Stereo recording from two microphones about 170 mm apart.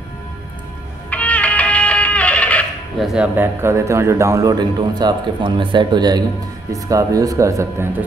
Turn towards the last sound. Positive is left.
turn(degrees=-15)  # may be behind; listen again after turning